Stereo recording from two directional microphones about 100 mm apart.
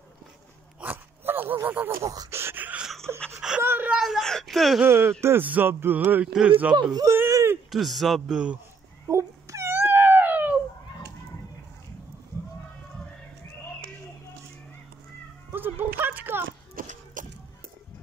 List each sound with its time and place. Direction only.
0.7 s dog: 15° right (ahead or behind)
2.0 s a sound: 30° right (ahead or behind); by 2.9 s 15° right (ahead or behind)
3.3 s whimper: 10° right (ahead or behind)
3.6 s whimper: 20° right (ahead or behind)
3.9 s whimper: 5° right (ahead or behind)
4.8 s speech: 25° right (ahead or behind)
6.7 s speech: 45° right (ahead or behind)
7.1 s a sound: 30° right (ahead or behind)
7.7 s speech: centre (ahead or behind)
9.0 s cat: 30° right (ahead or behind)
15.5 s a sound: 20° right (ahead or behind)